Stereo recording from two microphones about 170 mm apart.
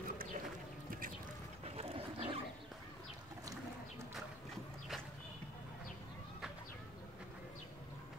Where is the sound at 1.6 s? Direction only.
35° right (ahead or behind).